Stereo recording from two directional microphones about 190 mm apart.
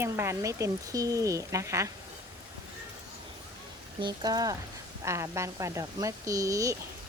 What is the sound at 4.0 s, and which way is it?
Speech, 20° right (ahead or behind).